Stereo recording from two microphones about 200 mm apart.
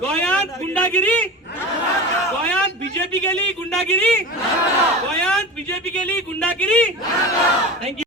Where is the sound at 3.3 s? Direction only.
5° left (ahead or behind).